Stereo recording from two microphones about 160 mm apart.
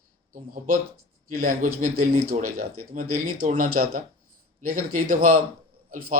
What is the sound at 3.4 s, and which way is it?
Speech, 55° right (ahead or behind).